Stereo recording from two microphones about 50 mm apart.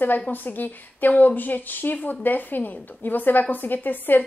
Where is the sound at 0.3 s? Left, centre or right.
Left.